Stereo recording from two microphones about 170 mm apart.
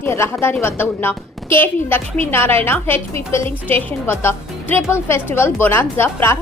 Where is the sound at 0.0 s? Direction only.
15° left (ahead or behind).